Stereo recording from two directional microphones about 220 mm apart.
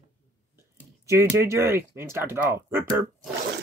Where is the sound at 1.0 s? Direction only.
10° right (ahead or behind).